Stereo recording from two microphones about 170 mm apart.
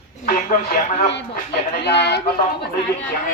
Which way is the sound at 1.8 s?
80° left.